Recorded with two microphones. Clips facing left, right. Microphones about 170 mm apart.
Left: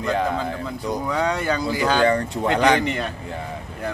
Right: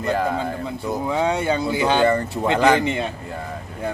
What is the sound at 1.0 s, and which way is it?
Speech, 25° right (ahead or behind).